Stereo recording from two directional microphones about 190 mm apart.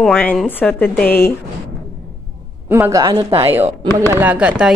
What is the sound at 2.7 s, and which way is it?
Speech, 15° right (ahead or behind).